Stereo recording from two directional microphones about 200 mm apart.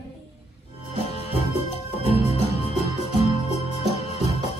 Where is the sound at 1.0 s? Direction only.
30° left (ahead or behind).